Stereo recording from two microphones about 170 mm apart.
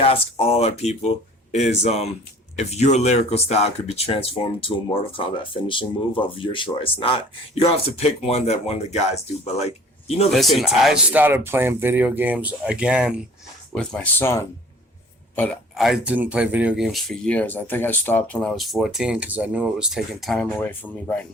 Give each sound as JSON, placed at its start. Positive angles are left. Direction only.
{"t": 0.0, "sound": "speech", "side_deg": 35}
{"t": 10.3, "sound": "speech", "side_deg": 0}
{"t": 13.7, "sound": "speech", "side_deg": 5}
{"t": 15.7, "sound": "speech", "side_deg": 0}